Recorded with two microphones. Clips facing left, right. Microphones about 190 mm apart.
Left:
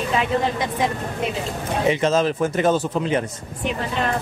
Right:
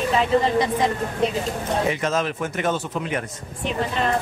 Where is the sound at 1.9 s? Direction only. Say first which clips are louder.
Left 5 dB; 30° left (ahead or behind).